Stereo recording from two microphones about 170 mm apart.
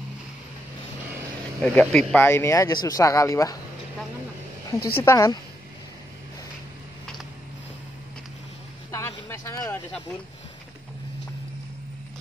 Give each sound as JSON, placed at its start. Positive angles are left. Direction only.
{"t": 1.6, "sound": "speech", "side_deg": 10}
{"t": 2.2, "sound": "speech", "side_deg": 15}
{"t": 4.7, "sound": "a woman's voice", "side_deg": 65}
{"t": 5.0, "sound": "speech", "side_deg": 20}
{"t": 8.9, "sound": "a sound", "side_deg": 15}